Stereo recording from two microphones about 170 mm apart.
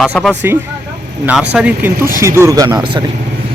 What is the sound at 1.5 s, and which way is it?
Speech, 10° right (ahead or behind).